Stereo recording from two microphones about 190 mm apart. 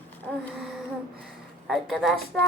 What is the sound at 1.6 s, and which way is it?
Speech, centre (ahead or behind).